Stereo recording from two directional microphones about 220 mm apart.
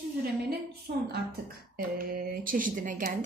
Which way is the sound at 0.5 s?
45° right (ahead or behind).